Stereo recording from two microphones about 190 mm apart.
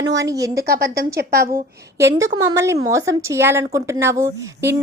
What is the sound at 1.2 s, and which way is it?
Speech, 55° right (ahead or behind).